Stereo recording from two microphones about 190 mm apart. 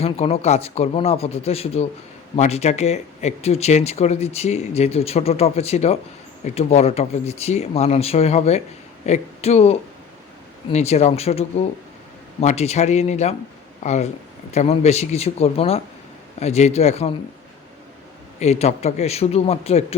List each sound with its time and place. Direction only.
0.0 s speech: 30° left (ahead or behind)
18.3 s speech: 35° left (ahead or behind)